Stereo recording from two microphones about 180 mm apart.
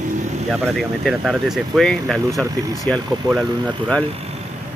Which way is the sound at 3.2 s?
20° right (ahead or behind).